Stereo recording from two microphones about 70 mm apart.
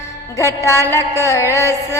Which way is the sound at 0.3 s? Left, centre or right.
Left.